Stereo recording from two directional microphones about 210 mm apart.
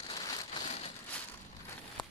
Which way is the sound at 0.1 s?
20° left (ahead or behind).